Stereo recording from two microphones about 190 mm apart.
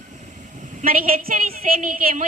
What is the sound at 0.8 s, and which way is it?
A woman's voice, 50° right (ahead or behind).